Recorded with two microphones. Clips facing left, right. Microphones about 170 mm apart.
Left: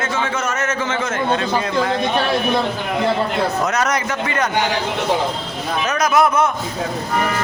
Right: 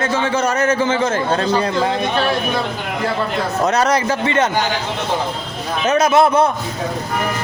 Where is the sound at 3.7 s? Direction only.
30° right (ahead or behind).